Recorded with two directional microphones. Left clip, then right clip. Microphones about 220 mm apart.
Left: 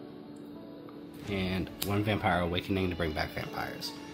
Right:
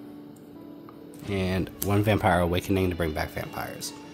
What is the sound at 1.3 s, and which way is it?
Speech, 50° right (ahead or behind).